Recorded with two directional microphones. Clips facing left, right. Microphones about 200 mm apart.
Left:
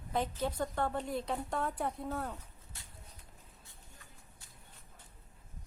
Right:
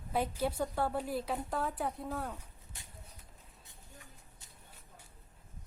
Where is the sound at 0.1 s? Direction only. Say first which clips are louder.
Right 1 dB; 10° right (ahead or behind).